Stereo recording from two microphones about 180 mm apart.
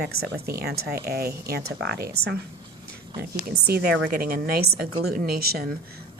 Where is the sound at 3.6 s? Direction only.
60° right (ahead or behind).